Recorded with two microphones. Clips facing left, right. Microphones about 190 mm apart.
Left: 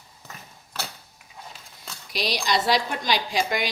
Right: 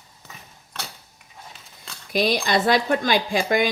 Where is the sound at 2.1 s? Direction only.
50° right (ahead or behind).